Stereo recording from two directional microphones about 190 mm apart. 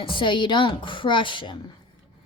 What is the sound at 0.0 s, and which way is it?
Speech, 25° left (ahead or behind).